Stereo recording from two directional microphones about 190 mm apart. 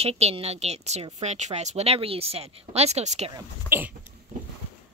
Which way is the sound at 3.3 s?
10° right (ahead or behind).